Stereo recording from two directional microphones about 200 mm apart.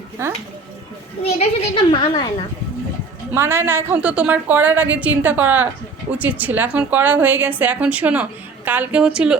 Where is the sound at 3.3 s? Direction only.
10° right (ahead or behind).